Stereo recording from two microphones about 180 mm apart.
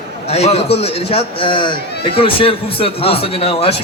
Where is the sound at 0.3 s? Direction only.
35° left (ahead or behind).